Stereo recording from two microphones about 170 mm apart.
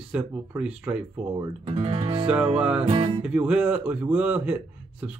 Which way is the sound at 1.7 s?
35° right (ahead or behind).